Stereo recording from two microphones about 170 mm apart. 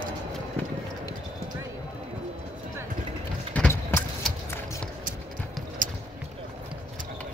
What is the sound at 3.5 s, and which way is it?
Vehicle, 10° left (ahead or behind).